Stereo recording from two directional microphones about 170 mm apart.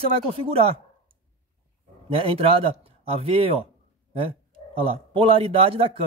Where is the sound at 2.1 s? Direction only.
35° right (ahead or behind).